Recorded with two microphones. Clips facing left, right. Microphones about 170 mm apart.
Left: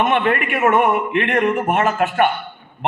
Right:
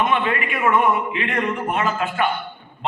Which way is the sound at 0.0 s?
55° left (ahead or behind).